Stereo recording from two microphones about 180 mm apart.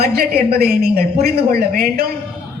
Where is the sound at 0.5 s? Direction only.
60° right (ahead or behind).